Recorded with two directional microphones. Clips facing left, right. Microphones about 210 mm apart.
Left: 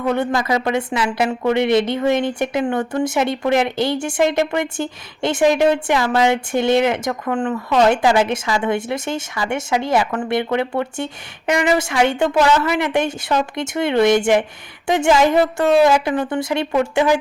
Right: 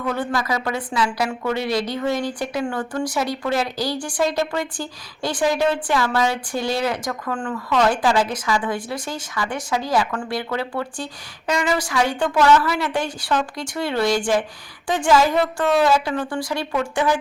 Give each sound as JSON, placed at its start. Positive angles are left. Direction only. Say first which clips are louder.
{"t": 0.0, "sound": "speech", "louder": "left 5 dB", "side_deg": 25}